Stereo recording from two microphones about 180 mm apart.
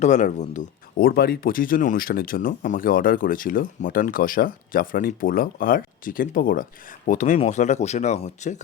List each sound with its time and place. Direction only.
0.0 s speech: 40° left (ahead or behind)